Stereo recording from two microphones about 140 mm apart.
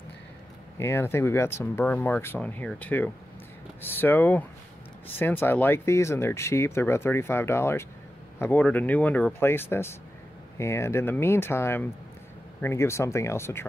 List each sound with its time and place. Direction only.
0.7 s speech: 20° left (ahead or behind)